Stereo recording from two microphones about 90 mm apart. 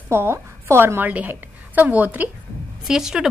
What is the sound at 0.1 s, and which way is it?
A woman's voice, 25° right (ahead or behind).